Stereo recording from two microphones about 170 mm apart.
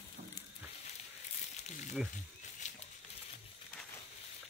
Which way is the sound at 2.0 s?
5° right (ahead or behind).